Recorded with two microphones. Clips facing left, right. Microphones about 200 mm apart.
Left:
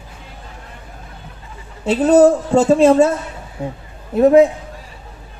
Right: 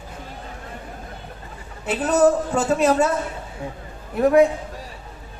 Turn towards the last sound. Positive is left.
turn(degrees=25)  # may be behind; listen again after turning